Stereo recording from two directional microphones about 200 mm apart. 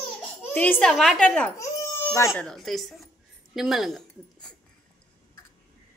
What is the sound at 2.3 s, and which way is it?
A woman's voice, centre (ahead or behind).